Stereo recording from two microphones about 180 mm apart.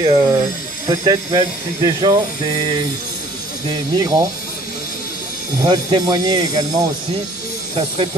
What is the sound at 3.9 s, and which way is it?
Speech, 20° right (ahead or behind).